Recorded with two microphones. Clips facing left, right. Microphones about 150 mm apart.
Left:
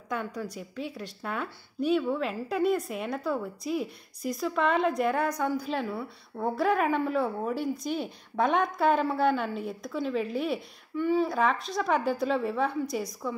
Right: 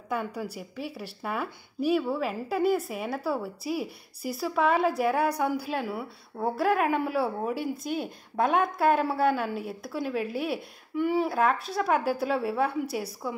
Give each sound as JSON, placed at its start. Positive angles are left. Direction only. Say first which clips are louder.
{"t": 0.1, "sound": "a woman's voice", "louder": "right 2 dB", "side_deg": -10}